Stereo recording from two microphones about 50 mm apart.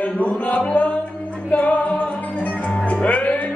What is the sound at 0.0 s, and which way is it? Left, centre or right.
Music, left.